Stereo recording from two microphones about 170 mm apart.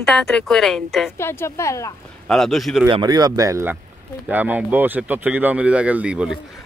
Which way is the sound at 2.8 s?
25° right (ahead or behind).